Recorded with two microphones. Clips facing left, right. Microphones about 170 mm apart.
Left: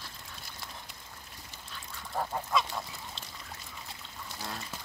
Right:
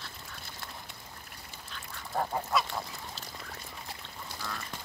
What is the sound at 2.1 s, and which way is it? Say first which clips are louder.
Goose: right 1 dB; 5° right (ahead or behind).